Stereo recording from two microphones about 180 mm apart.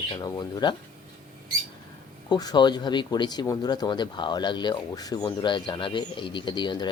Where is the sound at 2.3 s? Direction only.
25° left (ahead or behind).